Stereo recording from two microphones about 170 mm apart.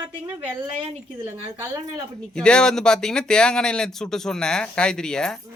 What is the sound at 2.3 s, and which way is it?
Speech, 5° left (ahead or behind).